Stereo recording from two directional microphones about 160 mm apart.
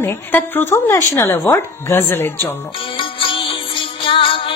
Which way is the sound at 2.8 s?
35° left (ahead or behind).